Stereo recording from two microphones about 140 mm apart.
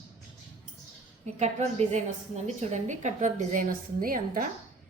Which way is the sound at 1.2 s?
55° right (ahead or behind).